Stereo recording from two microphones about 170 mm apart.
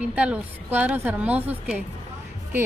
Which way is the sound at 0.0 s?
10° right (ahead or behind).